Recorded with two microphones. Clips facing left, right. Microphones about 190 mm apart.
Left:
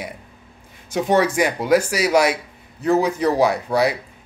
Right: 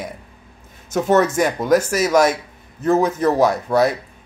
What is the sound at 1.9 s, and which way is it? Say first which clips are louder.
Speech: right 2 dB; 45° right (ahead or behind).